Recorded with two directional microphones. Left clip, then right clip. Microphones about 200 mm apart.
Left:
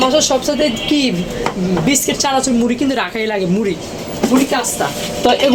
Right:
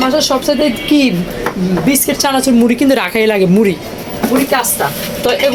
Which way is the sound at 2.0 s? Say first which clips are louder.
Right 2 dB; 20° right (ahead or behind).